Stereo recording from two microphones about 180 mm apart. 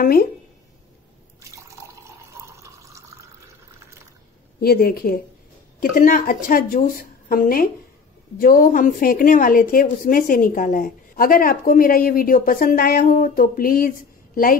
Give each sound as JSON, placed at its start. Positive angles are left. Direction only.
{"t": 0.0, "sound": "a woman's voice", "side_deg": 55}
{"t": 2.5, "sound": "water", "side_deg": -15}
{"t": 4.6, "sound": "a woman's voice", "side_deg": 60}